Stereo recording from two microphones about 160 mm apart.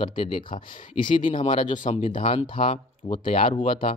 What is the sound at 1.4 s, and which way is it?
Speech, 30° left (ahead or behind).